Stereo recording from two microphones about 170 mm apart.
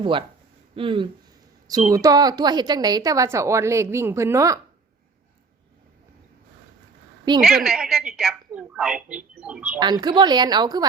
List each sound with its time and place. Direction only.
0.0 s a woman's voice: 30° right (ahead or behind)
1.9 s a woman's voice: 20° right (ahead or behind)
7.4 s a woman's voice: centre (ahead or behind)
9.8 s a woman's voice: 25° right (ahead or behind)